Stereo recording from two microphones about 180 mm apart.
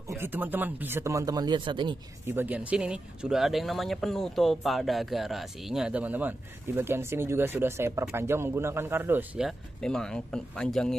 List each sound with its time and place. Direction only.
0.2 s speech: 10° right (ahead or behind); by 2.0 s 25° right (ahead or behind)
2.2 s speech: 10° right (ahead or behind)